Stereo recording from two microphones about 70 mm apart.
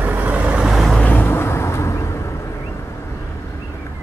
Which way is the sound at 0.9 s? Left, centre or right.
Left.